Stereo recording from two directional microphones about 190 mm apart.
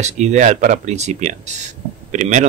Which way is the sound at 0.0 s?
35° right (ahead or behind).